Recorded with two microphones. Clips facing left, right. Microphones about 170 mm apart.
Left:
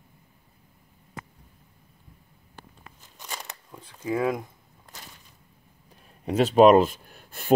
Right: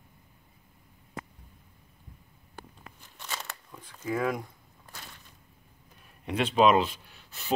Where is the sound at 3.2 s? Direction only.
15° left (ahead or behind).